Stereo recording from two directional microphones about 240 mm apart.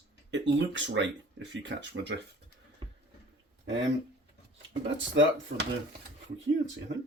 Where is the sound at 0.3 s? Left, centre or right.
Right.